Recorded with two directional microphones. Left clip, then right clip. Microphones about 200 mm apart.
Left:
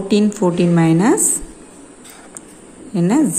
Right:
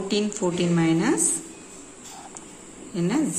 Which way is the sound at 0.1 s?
30° left (ahead or behind).